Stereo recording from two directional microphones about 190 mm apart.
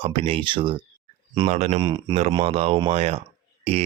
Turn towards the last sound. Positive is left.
turn(degrees=-35)  # may be behind; listen again after turning